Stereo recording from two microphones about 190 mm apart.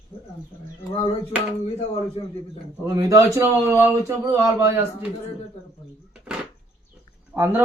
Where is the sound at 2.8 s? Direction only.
15° right (ahead or behind).